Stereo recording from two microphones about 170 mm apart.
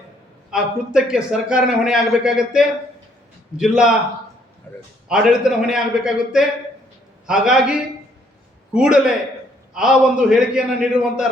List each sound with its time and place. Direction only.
0.5 s a man's voice: 5° right (ahead or behind)
4.7 s a man's voice: 15° left (ahead or behind)
5.0 s a man's voice: 5° right (ahead or behind)